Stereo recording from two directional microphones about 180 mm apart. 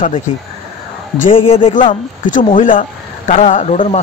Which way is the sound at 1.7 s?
45° left (ahead or behind).